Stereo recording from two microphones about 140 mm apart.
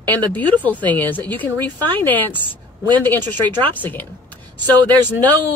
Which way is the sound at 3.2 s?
30° right (ahead or behind).